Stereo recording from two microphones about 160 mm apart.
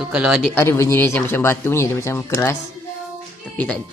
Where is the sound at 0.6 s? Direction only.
15° left (ahead or behind).